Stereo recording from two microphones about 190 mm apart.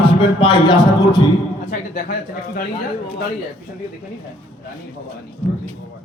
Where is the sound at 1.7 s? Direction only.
55° left (ahead or behind).